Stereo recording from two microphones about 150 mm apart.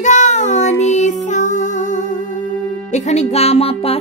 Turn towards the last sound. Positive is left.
turn(degrees=40)  # may be behind; listen again after turning